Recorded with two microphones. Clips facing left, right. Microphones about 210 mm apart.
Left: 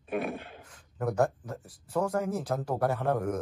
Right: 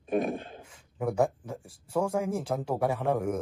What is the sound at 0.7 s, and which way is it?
Speech, 10° right (ahead or behind).